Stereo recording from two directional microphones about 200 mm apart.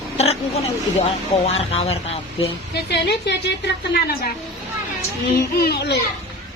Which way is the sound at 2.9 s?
55° left (ahead or behind).